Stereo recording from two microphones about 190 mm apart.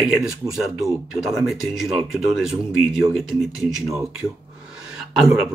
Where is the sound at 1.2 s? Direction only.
Centre (ahead or behind).